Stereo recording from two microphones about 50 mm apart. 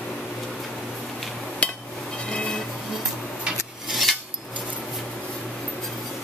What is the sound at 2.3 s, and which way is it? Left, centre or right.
Vehicle, centre.